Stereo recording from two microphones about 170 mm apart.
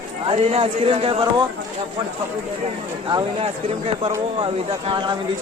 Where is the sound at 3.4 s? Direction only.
35° right (ahead or behind).